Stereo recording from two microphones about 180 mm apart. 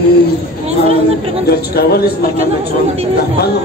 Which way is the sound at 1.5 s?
60° left (ahead or behind).